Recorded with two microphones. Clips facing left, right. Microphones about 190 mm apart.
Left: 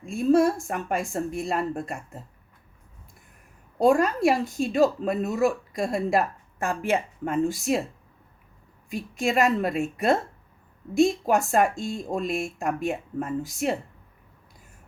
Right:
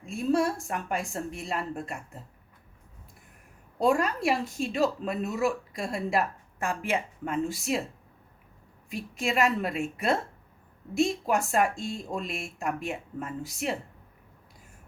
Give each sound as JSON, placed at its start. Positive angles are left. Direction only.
{"t": 0.0, "sound": "speech", "side_deg": 45}
{"t": 3.8, "sound": "speech", "side_deg": 45}
{"t": 8.9, "sound": "speech", "side_deg": 45}